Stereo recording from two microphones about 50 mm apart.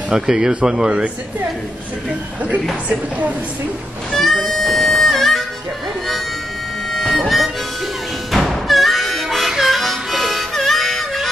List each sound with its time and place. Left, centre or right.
0.1 s speech: centre
2.9 s a woman's voice: right
4.2 s music: centre
6.9 s harmonica: centre
8.3 s music: centre
9.5 s harmonica: centre